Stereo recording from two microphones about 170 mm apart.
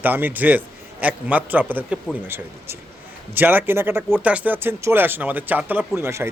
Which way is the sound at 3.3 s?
10° right (ahead or behind).